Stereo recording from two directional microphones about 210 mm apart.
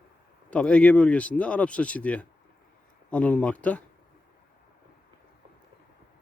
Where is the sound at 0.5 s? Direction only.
5° left (ahead or behind).